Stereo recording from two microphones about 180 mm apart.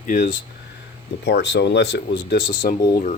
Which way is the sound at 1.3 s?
70° left (ahead or behind).